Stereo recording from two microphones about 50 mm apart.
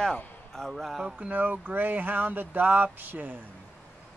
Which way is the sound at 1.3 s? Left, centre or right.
Right.